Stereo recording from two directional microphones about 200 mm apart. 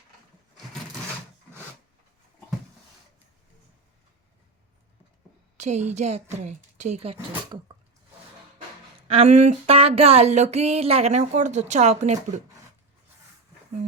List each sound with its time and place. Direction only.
5.5 s speech: 35° right (ahead or behind)
9.0 s speech: 30° right (ahead or behind)